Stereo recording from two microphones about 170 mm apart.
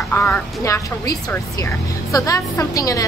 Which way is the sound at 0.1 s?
15° left (ahead or behind).